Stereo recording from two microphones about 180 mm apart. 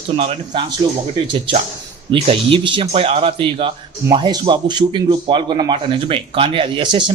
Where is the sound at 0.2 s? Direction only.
35° right (ahead or behind).